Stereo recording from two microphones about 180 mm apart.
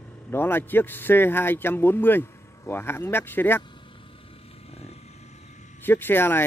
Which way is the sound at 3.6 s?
25° left (ahead or behind).